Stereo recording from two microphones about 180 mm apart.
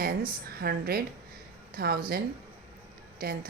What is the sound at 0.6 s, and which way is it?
A woman's voice, 60° right (ahead or behind).